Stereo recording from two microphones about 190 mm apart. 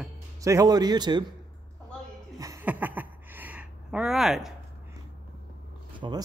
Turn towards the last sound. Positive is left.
turn(degrees=-25)  # may be behind; listen again after turning